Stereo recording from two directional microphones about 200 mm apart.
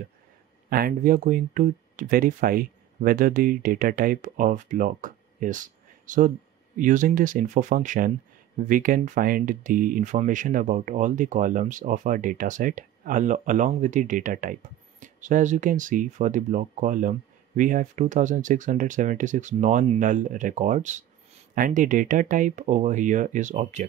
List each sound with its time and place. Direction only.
0.7 s speech: 45° right (ahead or behind)